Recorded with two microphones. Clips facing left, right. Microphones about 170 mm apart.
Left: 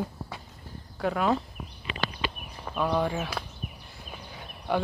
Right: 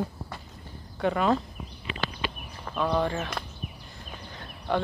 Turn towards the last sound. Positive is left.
turn(degrees=10)  # may be behind; listen again after turning